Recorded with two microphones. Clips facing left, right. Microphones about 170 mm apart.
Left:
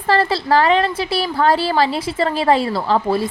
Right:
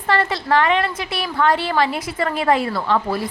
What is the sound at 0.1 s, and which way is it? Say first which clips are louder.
A woman's voice: left 3 dB; 35° left (ahead or behind).